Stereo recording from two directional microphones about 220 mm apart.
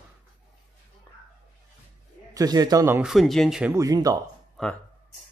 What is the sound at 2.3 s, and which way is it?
Speech, 15° right (ahead or behind).